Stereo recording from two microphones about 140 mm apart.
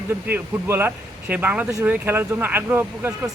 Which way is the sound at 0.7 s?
15° right (ahead or behind).